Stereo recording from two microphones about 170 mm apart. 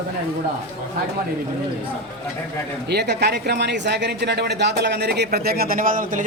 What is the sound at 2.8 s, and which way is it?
A man's voice, 75° right (ahead or behind).